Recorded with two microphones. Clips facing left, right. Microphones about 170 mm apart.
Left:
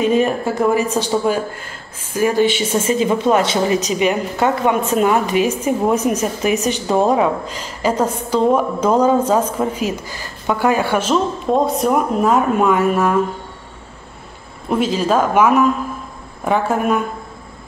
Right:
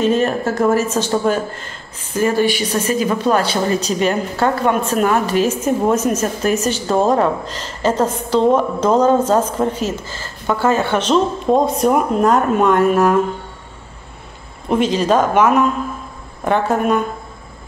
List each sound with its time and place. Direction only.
0.0 s a woman's voice: 10° left (ahead or behind)
2.7 s a woman's voice: 25° left (ahead or behind); by 13.2 s centre (ahead or behind)
14.7 s speech: 5° left (ahead or behind)